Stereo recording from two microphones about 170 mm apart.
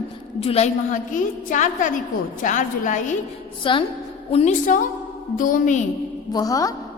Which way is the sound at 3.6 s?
30° left (ahead or behind).